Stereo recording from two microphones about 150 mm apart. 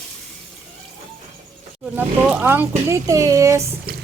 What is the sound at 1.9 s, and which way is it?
Speech, 10° right (ahead or behind).